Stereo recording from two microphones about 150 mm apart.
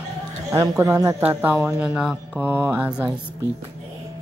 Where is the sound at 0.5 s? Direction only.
20° right (ahead or behind).